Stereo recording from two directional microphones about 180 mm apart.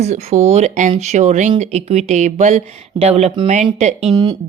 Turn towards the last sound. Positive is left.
turn(degrees=-25)  # may be behind; listen again after turning